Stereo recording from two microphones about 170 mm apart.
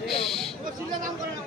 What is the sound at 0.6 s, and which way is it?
Chatter, 55° right (ahead or behind).